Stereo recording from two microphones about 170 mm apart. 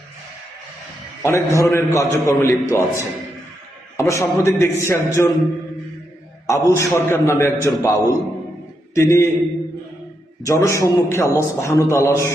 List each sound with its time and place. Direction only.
1.2 s a man's voice: 15° left (ahead or behind)
6.5 s a man's voice: 15° left (ahead or behind)
10.4 s a man's voice: 15° left (ahead or behind)